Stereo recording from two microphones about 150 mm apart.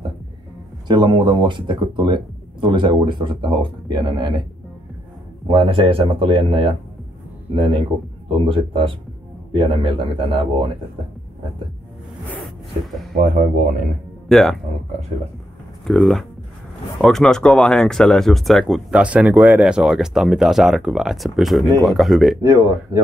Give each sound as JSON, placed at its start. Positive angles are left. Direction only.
{"t": 0.8, "sound": "speech", "side_deg": -30}
{"t": 5.5, "sound": "speech", "side_deg": -35}
{"t": 13.1, "sound": "speech", "side_deg": -65}
{"t": 14.3, "sound": "speech", "side_deg": 0}
{"t": 15.8, "sound": "speech", "side_deg": 0}
{"t": 22.4, "sound": "speech", "side_deg": -25}